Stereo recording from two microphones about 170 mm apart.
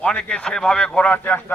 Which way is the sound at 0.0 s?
5° left (ahead or behind).